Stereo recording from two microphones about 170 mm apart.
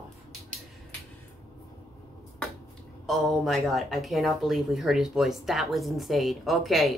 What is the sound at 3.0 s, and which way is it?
Speech, centre (ahead or behind).